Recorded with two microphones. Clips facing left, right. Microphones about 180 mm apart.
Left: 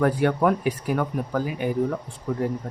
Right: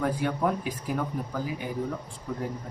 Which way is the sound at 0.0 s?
70° left (ahead or behind).